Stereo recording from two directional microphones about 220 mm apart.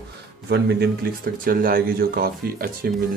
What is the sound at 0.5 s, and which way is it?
Speech, 45° right (ahead or behind).